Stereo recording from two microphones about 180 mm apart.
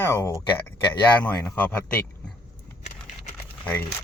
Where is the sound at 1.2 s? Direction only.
10° left (ahead or behind).